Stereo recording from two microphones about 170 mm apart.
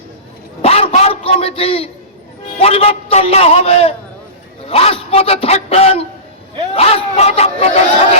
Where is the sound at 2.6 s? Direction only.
35° left (ahead or behind).